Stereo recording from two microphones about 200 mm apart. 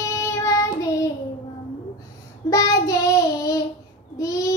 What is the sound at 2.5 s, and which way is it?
Child singing, 15° left (ahead or behind).